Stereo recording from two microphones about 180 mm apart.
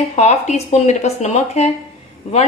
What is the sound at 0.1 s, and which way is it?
A woman's voice, 35° left (ahead or behind).